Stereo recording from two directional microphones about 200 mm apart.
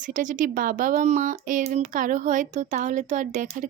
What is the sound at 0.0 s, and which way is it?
Speech, 40° right (ahead or behind).